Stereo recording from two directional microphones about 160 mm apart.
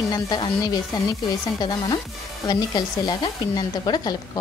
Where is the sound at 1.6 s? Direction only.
25° left (ahead or behind).